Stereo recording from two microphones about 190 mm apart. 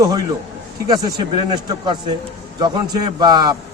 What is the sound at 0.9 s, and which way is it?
A man's voice, 20° right (ahead or behind).